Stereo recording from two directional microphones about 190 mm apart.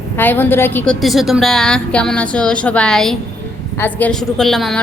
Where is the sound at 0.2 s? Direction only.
10° left (ahead or behind).